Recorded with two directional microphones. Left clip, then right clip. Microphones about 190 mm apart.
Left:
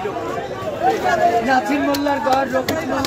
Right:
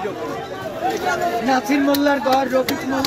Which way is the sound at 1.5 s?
50° right (ahead or behind).